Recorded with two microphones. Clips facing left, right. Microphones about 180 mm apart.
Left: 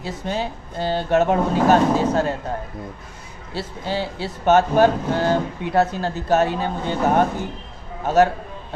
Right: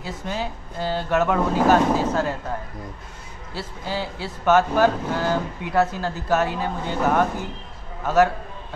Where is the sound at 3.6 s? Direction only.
25° left (ahead or behind).